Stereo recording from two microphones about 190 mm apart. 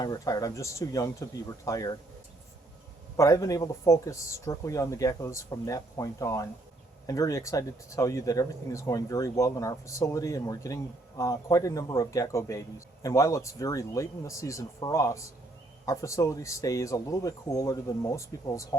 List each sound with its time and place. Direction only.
0.0 s a man's voice: 20° left (ahead or behind)
3.2 s a man's voice: 15° left (ahead or behind)